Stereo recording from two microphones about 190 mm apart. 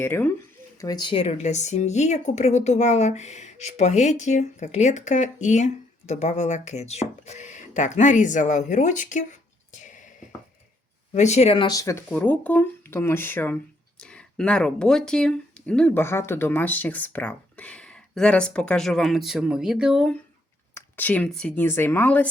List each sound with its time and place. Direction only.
0.0 s speech: 10° left (ahead or behind)
20.7 s speech: 10° left (ahead or behind)